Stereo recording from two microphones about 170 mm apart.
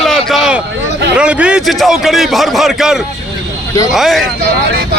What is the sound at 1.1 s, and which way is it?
A man's voice, 5° right (ahead or behind).